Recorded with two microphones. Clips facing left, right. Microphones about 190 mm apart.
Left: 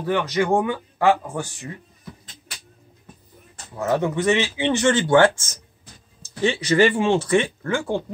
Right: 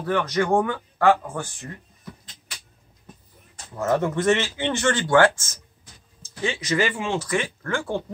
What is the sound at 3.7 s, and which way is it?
Speech, centre (ahead or behind).